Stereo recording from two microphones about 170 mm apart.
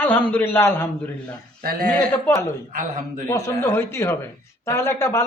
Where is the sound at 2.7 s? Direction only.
50° right (ahead or behind).